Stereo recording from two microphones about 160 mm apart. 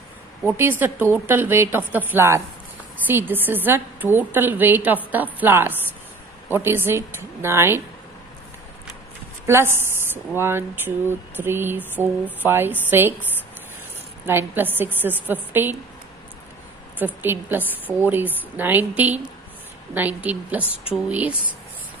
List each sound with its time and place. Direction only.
0.4 s a woman's voice: 15° right (ahead or behind)
9.5 s a woman's voice: 15° right (ahead or behind)
14.2 s a woman's voice: 15° right (ahead or behind)
17.0 s a woman's voice: 10° right (ahead or behind)